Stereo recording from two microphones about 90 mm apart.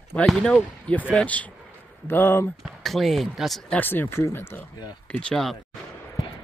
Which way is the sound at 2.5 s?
Centre (ahead or behind).